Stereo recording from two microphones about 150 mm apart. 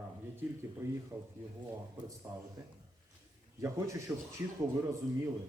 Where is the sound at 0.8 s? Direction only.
20° right (ahead or behind).